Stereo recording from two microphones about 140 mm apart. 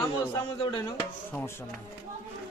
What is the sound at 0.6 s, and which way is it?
Speech, 35° left (ahead or behind).